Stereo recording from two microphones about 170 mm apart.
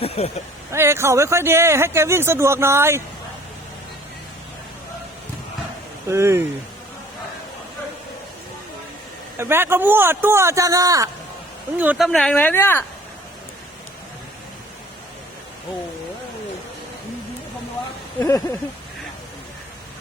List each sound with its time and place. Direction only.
0.0 s speech: 35° left (ahead or behind)
0.7 s speech: 15° right (ahead or behind)
6.1 s speech: 15° right (ahead or behind)
9.4 s speech: 15° right (ahead or behind)
12.0 s speech: 5° left (ahead or behind)
18.2 s speech: 15° left (ahead or behind)